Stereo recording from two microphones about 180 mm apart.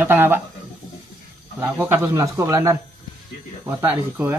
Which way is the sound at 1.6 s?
10° right (ahead or behind).